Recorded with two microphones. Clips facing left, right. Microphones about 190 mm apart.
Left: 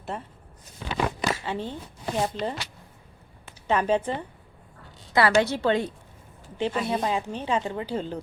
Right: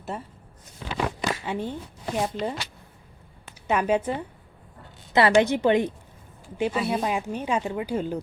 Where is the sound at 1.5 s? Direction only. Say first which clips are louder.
Right 2 dB; 15° right (ahead or behind).